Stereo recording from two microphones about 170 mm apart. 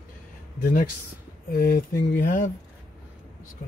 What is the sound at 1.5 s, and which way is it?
Speech, 55° left (ahead or behind).